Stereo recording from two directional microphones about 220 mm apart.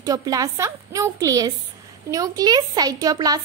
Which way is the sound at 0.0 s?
15° right (ahead or behind).